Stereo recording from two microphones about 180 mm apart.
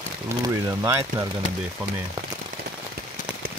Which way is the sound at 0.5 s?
15° right (ahead or behind).